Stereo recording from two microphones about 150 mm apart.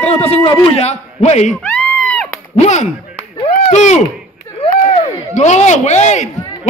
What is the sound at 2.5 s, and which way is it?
A man's voice, 50° left (ahead or behind).